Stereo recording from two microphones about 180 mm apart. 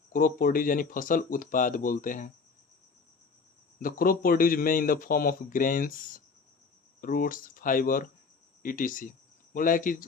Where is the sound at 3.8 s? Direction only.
50° left (ahead or behind).